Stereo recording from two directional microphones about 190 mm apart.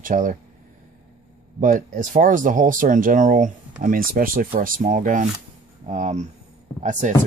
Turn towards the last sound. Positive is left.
turn(degrees=-40)  # may be behind; listen again after turning